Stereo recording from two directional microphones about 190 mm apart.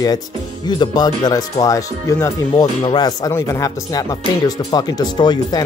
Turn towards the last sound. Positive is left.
turn(degrees=25)  # may be behind; listen again after turning